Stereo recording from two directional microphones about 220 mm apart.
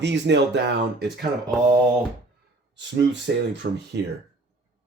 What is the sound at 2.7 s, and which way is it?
Speech, 55° right (ahead or behind).